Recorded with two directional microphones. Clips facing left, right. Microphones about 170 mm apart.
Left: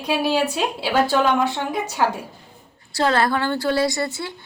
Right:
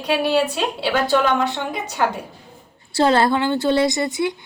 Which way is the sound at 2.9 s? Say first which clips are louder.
Right 3 dB; 25° right (ahead or behind).